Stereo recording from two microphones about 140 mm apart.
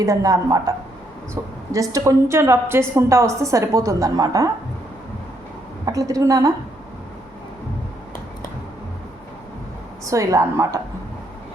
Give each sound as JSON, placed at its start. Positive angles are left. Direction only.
{"t": 0.0, "sound": "a woman's voice", "side_deg": -25}
{"t": 1.7, "sound": "a woman's voice", "side_deg": -25}
{"t": 5.8, "sound": "a woman's voice", "side_deg": -25}
{"t": 10.1, "sound": "a woman's voice", "side_deg": -20}